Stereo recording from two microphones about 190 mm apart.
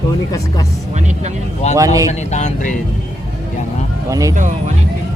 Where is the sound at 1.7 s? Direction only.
20° right (ahead or behind).